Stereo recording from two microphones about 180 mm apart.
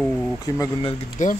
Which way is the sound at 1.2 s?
45° left (ahead or behind).